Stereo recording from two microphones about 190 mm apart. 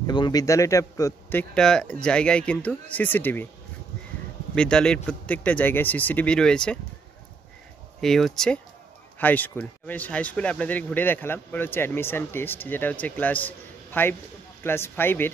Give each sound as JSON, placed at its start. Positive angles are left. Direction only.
{"t": 0.0, "sound": "a man's voice", "side_deg": 20}
{"t": 1.5, "sound": "speech", "side_deg": 5}
{"t": 4.6, "sound": "speech", "side_deg": 5}
{"t": 8.0, "sound": "a man's voice", "side_deg": 0}